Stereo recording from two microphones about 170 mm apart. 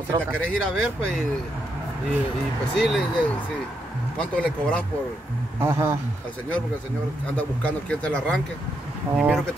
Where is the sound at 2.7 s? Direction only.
Centre (ahead or behind).